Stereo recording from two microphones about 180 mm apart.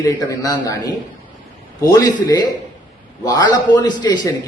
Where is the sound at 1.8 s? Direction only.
20° left (ahead or behind).